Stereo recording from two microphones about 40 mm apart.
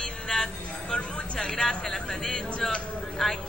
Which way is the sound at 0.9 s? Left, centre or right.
Left.